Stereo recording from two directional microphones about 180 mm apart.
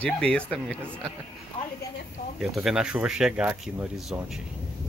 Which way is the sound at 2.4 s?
Centre (ahead or behind).